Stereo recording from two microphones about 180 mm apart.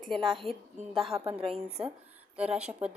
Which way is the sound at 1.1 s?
15° right (ahead or behind).